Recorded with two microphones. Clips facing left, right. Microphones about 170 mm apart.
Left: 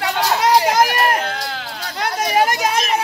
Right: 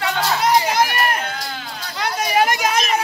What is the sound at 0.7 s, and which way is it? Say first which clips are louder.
Run: left 3 dB; 40° left (ahead or behind).